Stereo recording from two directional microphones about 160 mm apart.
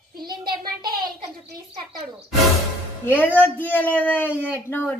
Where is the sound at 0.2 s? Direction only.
70° right (ahead or behind).